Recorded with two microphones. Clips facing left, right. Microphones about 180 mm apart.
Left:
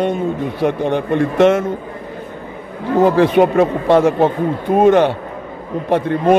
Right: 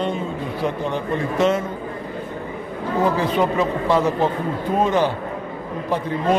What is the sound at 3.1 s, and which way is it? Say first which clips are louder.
A man's voice: left 8 dB; 65° left (ahead or behind).